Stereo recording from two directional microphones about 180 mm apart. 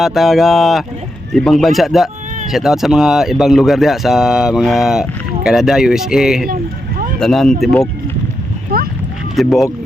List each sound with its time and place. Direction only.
0.0 s speech: centre (ahead or behind)
6.5 s a sound: 50° right (ahead or behind)
7.2 s speech: centre (ahead or behind)
8.7 s boat: 55° right (ahead or behind)
9.3 s speech: centre (ahead or behind)